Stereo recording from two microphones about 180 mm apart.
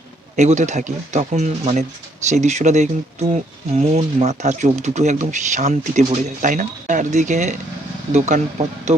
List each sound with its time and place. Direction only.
0.3 s speech: 40° right (ahead or behind)